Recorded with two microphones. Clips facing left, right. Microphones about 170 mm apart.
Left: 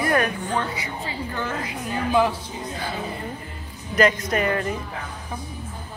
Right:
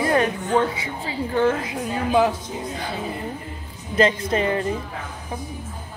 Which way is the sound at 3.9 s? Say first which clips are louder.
Right 1 dB; 25° right (ahead or behind).